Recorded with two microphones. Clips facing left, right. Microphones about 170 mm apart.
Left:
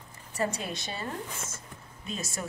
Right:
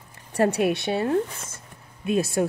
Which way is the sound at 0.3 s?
65° right (ahead or behind).